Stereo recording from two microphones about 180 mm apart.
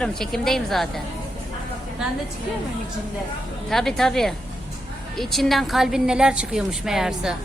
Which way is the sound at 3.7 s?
Centre (ahead or behind).